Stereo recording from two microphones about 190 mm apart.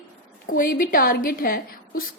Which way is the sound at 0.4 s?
50° left (ahead or behind).